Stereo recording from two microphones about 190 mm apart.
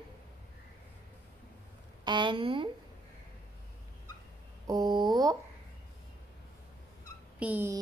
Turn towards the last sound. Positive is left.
turn(degrees=-10)  # may be behind; listen again after turning